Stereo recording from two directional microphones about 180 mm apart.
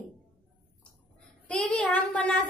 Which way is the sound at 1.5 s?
5° left (ahead or behind).